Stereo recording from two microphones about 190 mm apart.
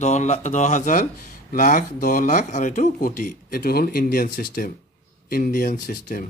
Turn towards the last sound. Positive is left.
turn(degrees=45)  # may be behind; listen again after turning